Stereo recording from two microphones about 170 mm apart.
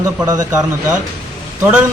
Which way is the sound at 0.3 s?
20° right (ahead or behind).